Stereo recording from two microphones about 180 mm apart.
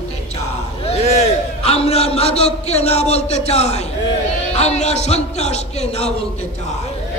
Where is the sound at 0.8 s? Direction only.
35° left (ahead or behind).